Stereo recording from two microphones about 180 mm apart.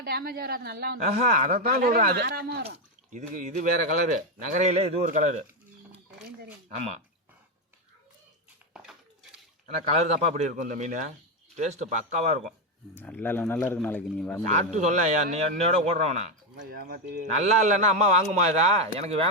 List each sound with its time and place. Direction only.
0.0 s speech: 60° right (ahead or behind)
2.6 s a man's voice: 45° right (ahead or behind)
6.7 s a man's voice: 35° right (ahead or behind)
8.7 s a sound: 5° right (ahead or behind)
9.6 s a man's voice: 40° right (ahead or behind)
12.9 s speech: 10° left (ahead or behind)
14.5 s a man's voice: 40° right (ahead or behind)
16.6 s speech: 55° right (ahead or behind)
17.4 s a man's voice: 40° right (ahead or behind)